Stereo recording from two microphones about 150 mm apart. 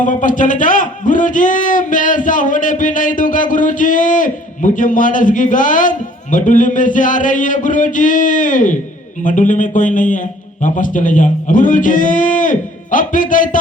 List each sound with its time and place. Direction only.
0.0 s a man's voice: 60° left (ahead or behind)